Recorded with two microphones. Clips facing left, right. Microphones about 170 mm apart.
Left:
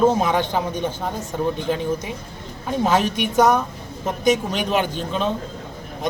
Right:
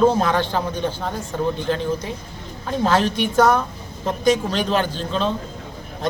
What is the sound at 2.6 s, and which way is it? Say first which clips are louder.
A man's voice: even; 10° left (ahead or behind).